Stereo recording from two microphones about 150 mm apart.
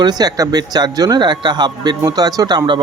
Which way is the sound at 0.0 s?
25° right (ahead or behind).